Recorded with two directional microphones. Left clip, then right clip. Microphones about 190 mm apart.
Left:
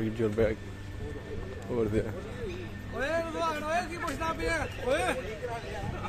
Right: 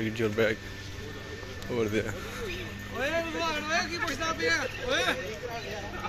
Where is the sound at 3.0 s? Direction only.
35° left (ahead or behind); by 5.2 s 55° left (ahead or behind).